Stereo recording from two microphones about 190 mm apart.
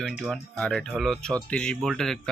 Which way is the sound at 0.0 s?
Centre (ahead or behind).